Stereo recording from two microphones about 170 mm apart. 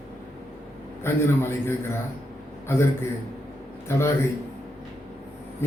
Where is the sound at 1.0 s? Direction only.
15° left (ahead or behind).